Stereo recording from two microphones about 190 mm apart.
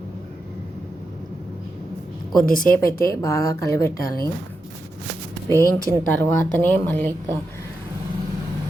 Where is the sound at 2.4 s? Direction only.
45° left (ahead or behind).